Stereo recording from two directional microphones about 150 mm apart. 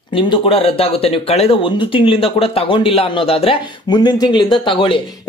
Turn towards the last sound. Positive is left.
turn(degrees=35)  # may be behind; listen again after turning